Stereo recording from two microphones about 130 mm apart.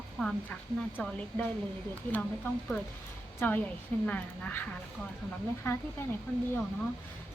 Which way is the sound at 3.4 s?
15° left (ahead or behind).